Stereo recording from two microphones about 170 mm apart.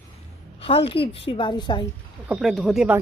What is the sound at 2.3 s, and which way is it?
Speech, centre (ahead or behind).